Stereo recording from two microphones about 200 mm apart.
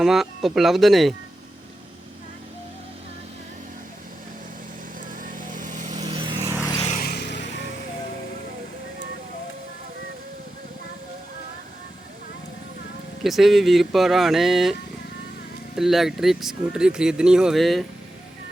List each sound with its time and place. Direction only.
0.0 s speech: centre (ahead or behind)
5.2 s vehicle: 40° right (ahead or behind)
6.0 s vehicle: 25° right (ahead or behind)
6.8 s music: 45° left (ahead or behind); by 7.6 s 60° left (ahead or behind)
13.2 s speech: centre (ahead or behind)